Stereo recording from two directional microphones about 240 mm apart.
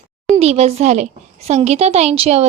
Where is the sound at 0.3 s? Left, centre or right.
Right.